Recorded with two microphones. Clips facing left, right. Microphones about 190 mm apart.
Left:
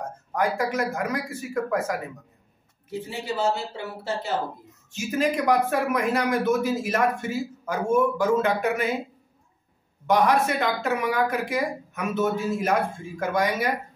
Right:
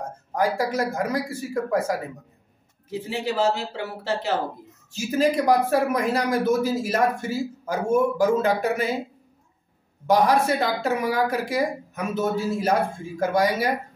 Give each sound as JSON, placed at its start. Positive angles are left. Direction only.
{"t": 0.3, "sound": "speech", "side_deg": -35}
{"t": 2.9, "sound": "speech", "side_deg": -90}
{"t": 4.9, "sound": "speech", "side_deg": -35}
{"t": 10.0, "sound": "speech", "side_deg": -35}